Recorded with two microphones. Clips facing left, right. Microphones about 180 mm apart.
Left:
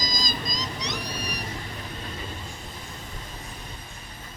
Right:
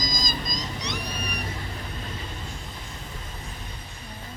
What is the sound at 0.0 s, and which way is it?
Vehicle, 50° right (ahead or behind).